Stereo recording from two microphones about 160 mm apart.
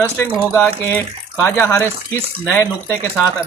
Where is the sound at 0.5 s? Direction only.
15° left (ahead or behind).